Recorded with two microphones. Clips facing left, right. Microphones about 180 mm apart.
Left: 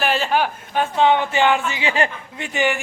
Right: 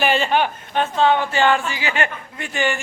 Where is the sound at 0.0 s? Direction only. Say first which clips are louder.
Right 1 dB; centre (ahead or behind).